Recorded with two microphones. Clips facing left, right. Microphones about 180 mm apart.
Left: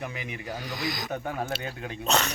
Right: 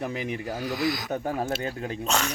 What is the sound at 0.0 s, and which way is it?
Speech, 35° right (ahead or behind).